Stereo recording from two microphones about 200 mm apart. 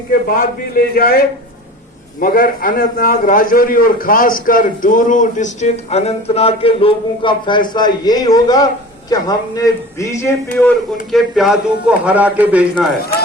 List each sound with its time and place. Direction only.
0.1 s a man's voice: 50° left (ahead or behind)
2.2 s a man's voice: 45° left (ahead or behind); by 10.7 s 15° left (ahead or behind)
11.1 s speech: centre (ahead or behind)